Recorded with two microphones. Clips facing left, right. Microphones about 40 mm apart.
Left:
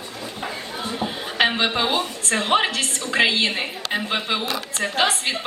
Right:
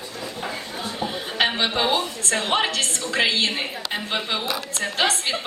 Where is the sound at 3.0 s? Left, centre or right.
Centre.